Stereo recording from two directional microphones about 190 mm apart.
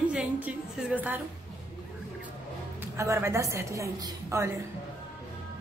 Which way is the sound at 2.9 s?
15° right (ahead or behind).